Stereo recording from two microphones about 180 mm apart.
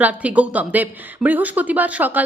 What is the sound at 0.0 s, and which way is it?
Speech, 10° right (ahead or behind).